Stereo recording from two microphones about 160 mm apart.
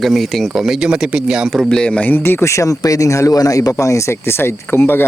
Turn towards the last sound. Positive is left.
turn(degrees=15)  # may be behind; listen again after turning